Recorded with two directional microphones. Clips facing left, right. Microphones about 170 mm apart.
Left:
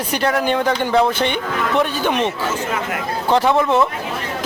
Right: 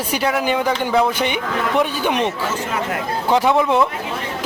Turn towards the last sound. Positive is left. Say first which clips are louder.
# even
turn(degrees=-10)  # may be behind; listen again after turning